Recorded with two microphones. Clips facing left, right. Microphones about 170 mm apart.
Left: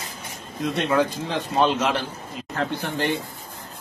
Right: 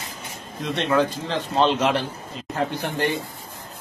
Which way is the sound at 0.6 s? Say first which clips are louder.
Even; 5° left (ahead or behind).